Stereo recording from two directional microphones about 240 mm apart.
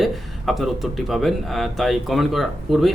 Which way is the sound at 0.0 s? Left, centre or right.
Centre.